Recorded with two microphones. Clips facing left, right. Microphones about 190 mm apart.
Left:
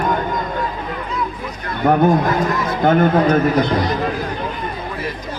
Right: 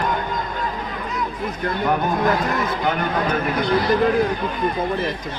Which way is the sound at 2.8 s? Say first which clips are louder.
Left 13 dB; 50° left (ahead or behind).